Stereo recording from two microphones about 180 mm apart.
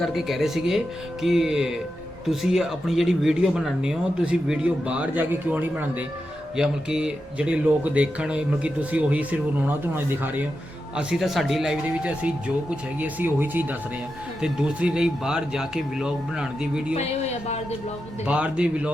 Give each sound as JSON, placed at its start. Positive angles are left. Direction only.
{"t": 0.0, "sound": "speech", "side_deg": 0}
{"t": 16.9, "sound": "a woman's voice", "side_deg": 35}
{"t": 18.3, "sound": "speech", "side_deg": -5}